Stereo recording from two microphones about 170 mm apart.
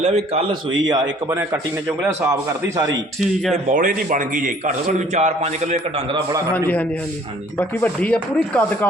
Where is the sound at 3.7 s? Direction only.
50° right (ahead or behind).